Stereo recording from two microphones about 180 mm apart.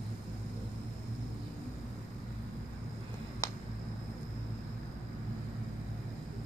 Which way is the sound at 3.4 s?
15° left (ahead or behind).